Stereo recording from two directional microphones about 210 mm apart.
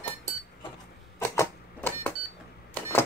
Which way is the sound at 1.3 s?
10° left (ahead or behind).